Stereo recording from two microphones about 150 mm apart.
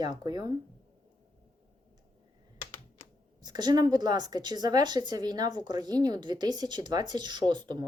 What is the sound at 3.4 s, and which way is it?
A woman's voice, 25° right (ahead or behind).